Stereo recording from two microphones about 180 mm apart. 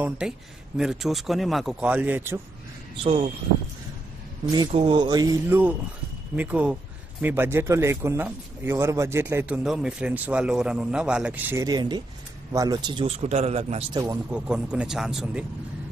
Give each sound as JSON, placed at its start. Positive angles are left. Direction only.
{"t": 0.2, "sound": "speech", "side_deg": -5}
{"t": 4.7, "sound": "a man's voice", "side_deg": -25}
{"t": 13.9, "sound": "speech", "side_deg": -20}
{"t": 14.3, "sound": "speech", "side_deg": -5}